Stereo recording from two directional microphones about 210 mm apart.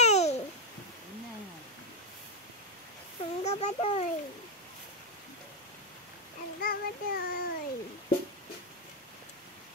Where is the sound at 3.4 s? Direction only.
30° left (ahead or behind).